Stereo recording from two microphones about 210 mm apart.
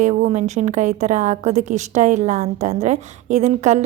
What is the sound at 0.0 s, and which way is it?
A woman's voice, 35° right (ahead or behind).